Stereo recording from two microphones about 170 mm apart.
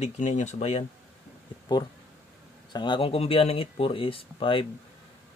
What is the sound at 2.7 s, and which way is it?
Speech, 25° left (ahead or behind).